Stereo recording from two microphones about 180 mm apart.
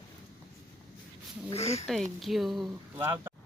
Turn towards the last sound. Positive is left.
turn(degrees=-15)  # may be behind; listen again after turning